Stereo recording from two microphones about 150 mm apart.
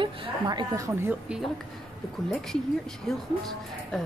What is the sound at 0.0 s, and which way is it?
A woman's voice, 30° right (ahead or behind).